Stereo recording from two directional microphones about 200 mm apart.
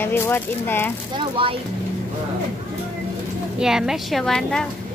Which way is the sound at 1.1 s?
25° right (ahead or behind).